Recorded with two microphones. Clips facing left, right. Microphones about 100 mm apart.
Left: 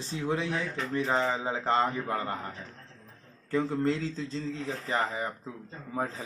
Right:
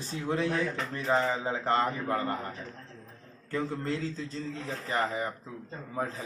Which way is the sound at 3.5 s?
30° left (ahead or behind).